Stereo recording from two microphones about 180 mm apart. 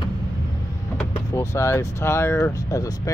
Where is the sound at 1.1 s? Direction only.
15° left (ahead or behind).